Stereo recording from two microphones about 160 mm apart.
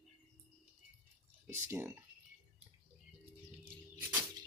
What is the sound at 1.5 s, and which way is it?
Speech, 15° right (ahead or behind).